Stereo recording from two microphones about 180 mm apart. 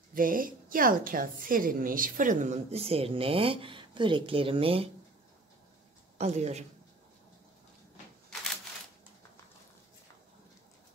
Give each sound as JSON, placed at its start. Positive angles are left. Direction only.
{"t": 0.1, "sound": "a woman's voice", "side_deg": -50}
{"t": 6.1, "sound": "a woman's voice", "side_deg": -35}